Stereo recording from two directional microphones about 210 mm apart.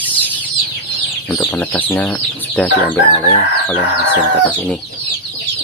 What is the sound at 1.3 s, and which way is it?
Speech, 5° left (ahead or behind).